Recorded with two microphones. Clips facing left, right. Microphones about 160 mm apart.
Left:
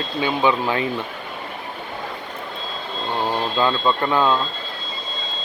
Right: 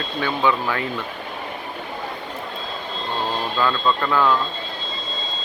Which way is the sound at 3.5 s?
25° left (ahead or behind).